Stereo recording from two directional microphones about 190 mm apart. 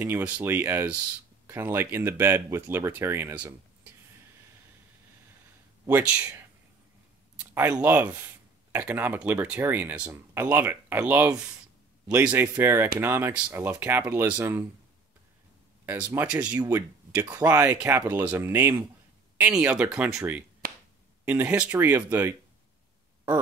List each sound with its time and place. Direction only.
0.0 s speech: 10° right (ahead or behind)
5.9 s speech: 10° right (ahead or behind)
15.8 s speech: 10° right (ahead or behind)